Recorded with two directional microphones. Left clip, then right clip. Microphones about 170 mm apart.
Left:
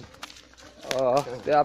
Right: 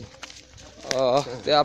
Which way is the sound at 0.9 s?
10° right (ahead or behind).